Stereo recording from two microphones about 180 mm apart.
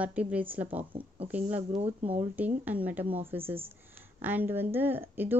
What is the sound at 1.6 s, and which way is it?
Speech, 35° right (ahead or behind).